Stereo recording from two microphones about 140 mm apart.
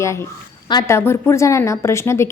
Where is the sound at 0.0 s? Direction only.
20° left (ahead or behind).